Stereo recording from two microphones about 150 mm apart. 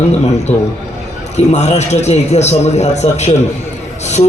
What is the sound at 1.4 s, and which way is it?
A man's voice, 50° left (ahead or behind).